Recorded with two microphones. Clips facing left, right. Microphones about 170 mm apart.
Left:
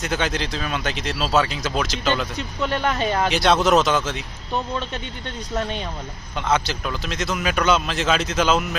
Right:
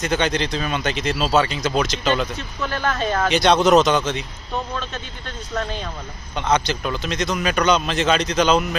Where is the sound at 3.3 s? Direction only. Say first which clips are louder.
Right 3 dB; centre (ahead or behind).